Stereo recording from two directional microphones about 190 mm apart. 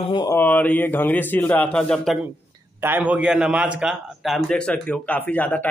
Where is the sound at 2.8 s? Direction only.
10° right (ahead or behind).